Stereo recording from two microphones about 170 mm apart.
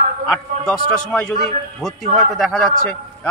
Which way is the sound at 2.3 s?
Centre (ahead or behind).